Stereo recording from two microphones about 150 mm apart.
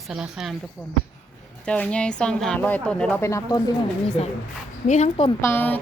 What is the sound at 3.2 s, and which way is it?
Speech, 20° left (ahead or behind).